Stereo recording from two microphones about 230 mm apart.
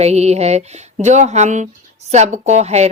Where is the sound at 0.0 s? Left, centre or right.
Right.